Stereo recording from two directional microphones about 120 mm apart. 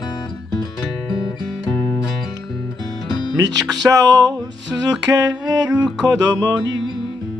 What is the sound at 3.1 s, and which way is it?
Music, 40° left (ahead or behind).